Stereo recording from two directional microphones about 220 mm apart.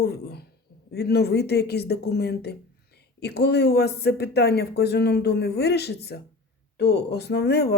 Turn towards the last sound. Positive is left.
turn(degrees=50)  # may be behind; listen again after turning